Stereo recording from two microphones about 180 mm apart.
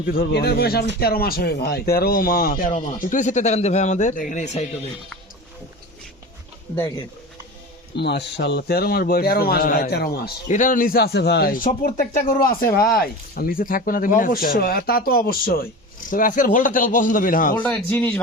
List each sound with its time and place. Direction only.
0.1 s speech: 60° left (ahead or behind)
2.7 s speech: 40° left (ahead or behind)
7.9 s speech: 70° left (ahead or behind)
10.5 s speech: 45° left (ahead or behind)
17.6 s speech: 10° left (ahead or behind)